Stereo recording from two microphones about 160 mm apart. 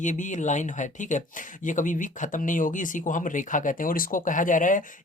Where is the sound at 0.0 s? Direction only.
50° left (ahead or behind).